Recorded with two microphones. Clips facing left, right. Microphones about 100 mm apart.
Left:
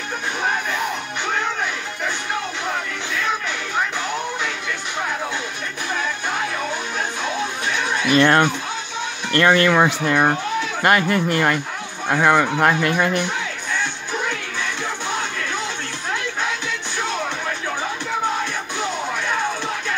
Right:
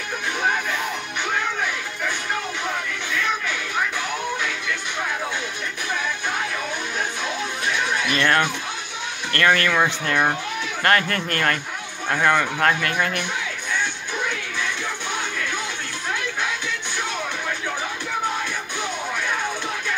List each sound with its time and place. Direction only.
8.1 s speech: 25° left (ahead or behind)